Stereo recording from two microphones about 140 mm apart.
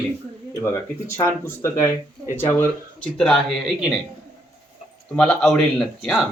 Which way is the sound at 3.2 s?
Centre (ahead or behind).